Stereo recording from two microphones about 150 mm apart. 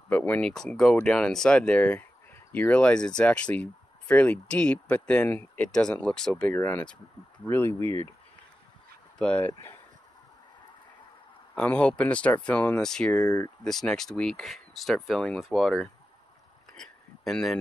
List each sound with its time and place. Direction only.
0.1 s speech: 10° left (ahead or behind)
9.2 s speech: 10° left (ahead or behind)
11.5 s speech: 10° left (ahead or behind)
13.2 s speech: 20° left (ahead or behind)
13.7 s speech: 5° left (ahead or behind)
16.7 s a sound: 5° left (ahead or behind)